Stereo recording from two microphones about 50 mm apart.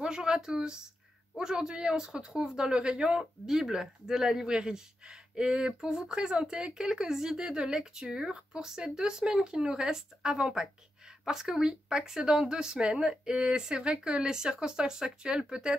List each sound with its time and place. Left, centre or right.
0.0 s speech: centre